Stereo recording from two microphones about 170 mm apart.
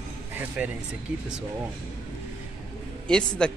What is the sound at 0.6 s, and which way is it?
Speech, 5° right (ahead or behind).